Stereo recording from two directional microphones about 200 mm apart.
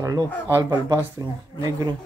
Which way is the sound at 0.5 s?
20° right (ahead or behind).